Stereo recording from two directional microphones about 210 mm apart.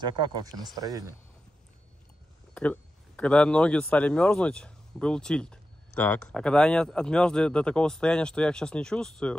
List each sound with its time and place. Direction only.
0.0 s speech: 20° right (ahead or behind)
2.5 s speech: 5° left (ahead or behind)